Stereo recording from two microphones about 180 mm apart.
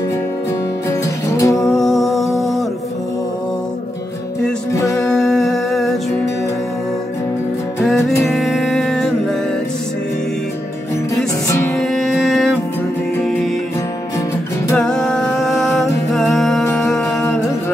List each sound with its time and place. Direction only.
0.8 s music: 15° left (ahead or behind)
1.7 s music: centre (ahead or behind)
4.7 s music: 15° left (ahead or behind)
5.0 s humming: centre (ahead or behind)
8.3 s music: centre (ahead or behind)
11.4 s music: 10° left (ahead or behind)
14.8 s music: 5° left (ahead or behind)